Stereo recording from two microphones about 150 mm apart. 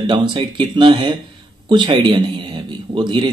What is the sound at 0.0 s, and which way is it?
A man's voice, 30° right (ahead or behind).